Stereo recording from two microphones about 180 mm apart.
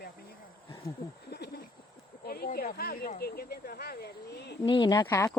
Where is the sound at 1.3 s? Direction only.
60° left (ahead or behind).